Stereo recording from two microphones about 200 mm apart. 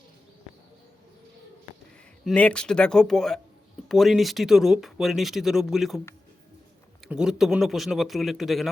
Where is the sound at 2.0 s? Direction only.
5° left (ahead or behind).